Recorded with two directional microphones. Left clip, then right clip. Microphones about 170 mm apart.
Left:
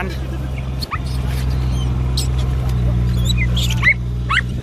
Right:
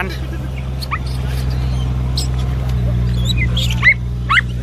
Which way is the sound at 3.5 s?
50° left (ahead or behind).